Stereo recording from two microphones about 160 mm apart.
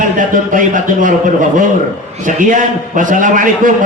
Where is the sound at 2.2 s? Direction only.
55° right (ahead or behind).